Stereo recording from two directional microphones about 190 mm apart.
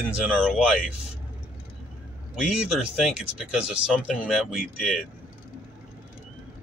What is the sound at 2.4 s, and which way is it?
Speech, 5° right (ahead or behind).